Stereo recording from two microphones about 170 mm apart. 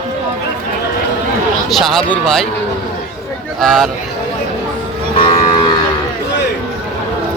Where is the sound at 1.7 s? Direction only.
Centre (ahead or behind).